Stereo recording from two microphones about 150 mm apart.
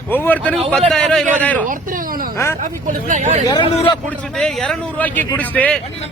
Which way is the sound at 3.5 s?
30° left (ahead or behind).